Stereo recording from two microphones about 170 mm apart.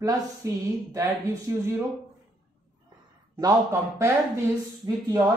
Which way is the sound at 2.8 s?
20° right (ahead or behind).